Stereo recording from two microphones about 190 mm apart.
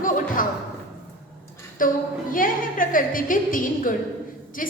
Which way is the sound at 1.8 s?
45° left (ahead or behind).